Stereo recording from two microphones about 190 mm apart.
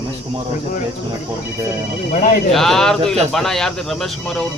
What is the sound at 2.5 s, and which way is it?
Speech, centre (ahead or behind).